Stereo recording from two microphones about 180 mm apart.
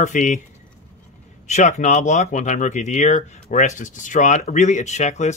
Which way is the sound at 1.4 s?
40° left (ahead or behind).